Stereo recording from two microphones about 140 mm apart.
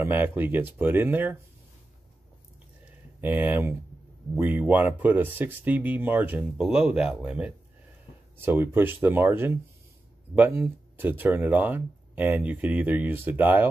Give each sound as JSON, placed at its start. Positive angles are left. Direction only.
{"t": 0.0, "sound": "speech", "side_deg": -15}
{"t": 3.2, "sound": "speech", "side_deg": -10}